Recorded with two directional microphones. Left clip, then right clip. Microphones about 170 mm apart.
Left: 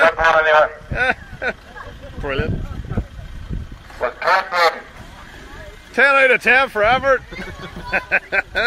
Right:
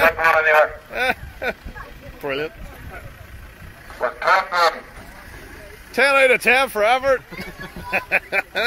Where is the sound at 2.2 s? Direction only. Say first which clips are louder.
Left 1 dB; 5° right (ahead or behind).